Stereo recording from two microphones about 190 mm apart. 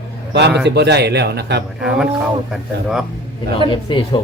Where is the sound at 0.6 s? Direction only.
60° right (ahead or behind).